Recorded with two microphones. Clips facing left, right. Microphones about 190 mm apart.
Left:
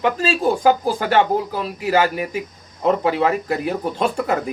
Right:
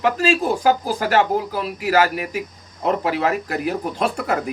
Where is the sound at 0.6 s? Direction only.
25° left (ahead or behind).